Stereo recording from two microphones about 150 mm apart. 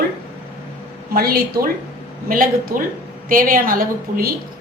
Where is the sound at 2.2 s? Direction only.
70° right (ahead or behind).